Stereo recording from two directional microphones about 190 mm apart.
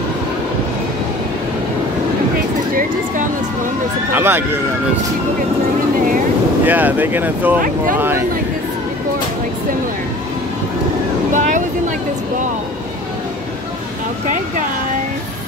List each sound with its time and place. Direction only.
4.1 s speech: 10° right (ahead or behind)
6.6 s speech: 10° right (ahead or behind)
7.6 s speech: 45° right (ahead or behind)
11.3 s a sound: 40° right (ahead or behind)